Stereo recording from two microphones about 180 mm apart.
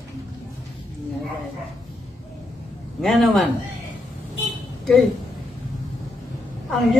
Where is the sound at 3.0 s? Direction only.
Centre (ahead or behind).